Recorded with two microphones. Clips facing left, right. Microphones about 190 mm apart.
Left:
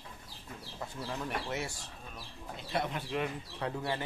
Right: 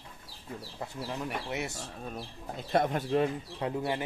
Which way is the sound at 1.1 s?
15° right (ahead or behind).